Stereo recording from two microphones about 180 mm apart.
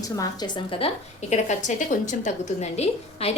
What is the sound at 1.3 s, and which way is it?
A woman's voice, 40° left (ahead or behind).